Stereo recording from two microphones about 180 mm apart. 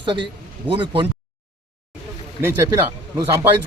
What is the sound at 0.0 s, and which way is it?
A man's voice, 25° right (ahead or behind).